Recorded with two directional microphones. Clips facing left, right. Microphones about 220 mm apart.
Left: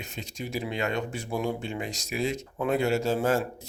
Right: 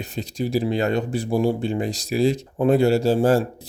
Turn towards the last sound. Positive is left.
turn(degrees=-30)  # may be behind; listen again after turning